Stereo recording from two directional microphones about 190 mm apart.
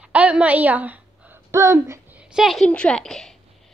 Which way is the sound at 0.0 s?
5° right (ahead or behind).